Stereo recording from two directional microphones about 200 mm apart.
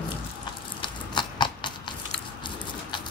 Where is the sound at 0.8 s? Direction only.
20° left (ahead or behind).